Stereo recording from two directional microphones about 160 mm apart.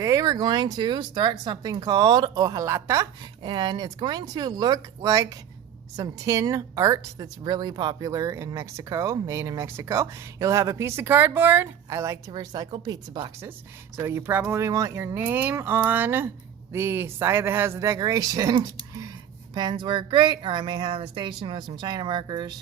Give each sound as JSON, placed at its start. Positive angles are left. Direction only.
{"t": 0.0, "sound": "a woman's voice", "side_deg": -20}
{"t": 3.4, "sound": "a woman's voice", "side_deg": -30}